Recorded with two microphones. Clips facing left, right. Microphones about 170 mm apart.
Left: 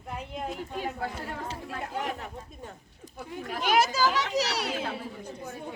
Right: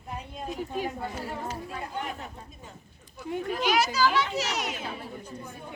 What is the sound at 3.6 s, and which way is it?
A child's voice, 50° left (ahead or behind).